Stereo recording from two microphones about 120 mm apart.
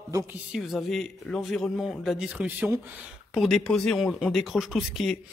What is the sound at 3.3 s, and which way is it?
Speech, centre (ahead or behind).